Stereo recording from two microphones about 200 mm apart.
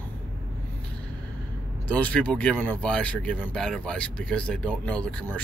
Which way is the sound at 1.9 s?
5° left (ahead or behind).